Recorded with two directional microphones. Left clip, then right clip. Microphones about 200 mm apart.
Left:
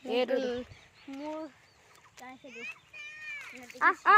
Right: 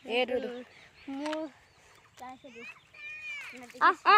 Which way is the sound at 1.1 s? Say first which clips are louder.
Right 4 dB; 45° right (ahead or behind).